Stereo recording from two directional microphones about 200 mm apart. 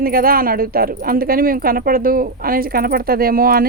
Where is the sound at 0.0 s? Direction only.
45° right (ahead or behind).